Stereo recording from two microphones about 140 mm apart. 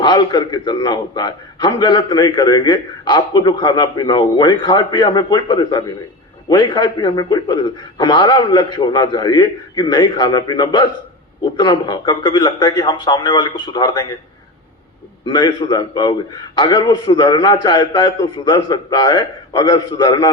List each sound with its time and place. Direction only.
0.0 s a man's voice: 30° left (ahead or behind)
15.2 s a man's voice: 30° left (ahead or behind)